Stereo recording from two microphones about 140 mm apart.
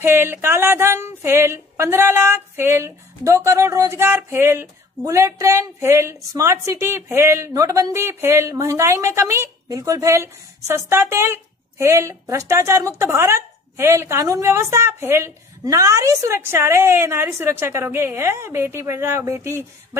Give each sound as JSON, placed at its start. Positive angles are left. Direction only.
{"t": 0.0, "sound": "a woman's voice", "side_deg": -15}